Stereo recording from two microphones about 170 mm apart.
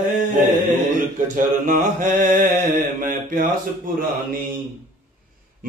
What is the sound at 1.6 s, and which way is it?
Mantra, 50° right (ahead or behind).